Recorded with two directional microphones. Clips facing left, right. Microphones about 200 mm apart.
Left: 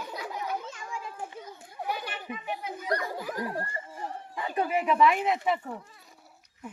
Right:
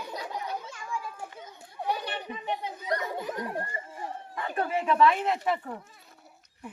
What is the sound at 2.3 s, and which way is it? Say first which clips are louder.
Children playing: right 1 dB; 30° right (ahead or behind).